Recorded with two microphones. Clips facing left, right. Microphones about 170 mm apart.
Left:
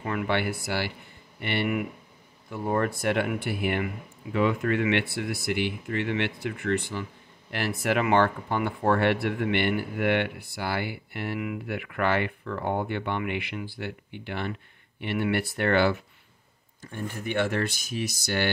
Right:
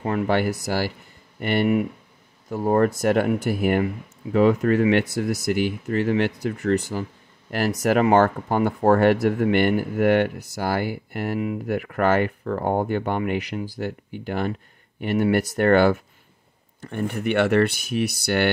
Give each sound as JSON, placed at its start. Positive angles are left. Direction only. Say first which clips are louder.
{"t": 0.0, "sound": "speech", "louder": "right 6 dB", "side_deg": -40}
{"t": 16.8, "sound": "speech", "louder": "right 8 dB", "side_deg": -70}